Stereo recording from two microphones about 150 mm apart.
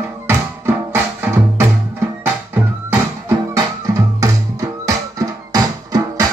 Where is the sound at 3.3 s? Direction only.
20° right (ahead or behind).